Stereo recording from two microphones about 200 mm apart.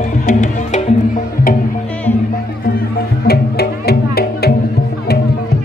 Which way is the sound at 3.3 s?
50° left (ahead or behind).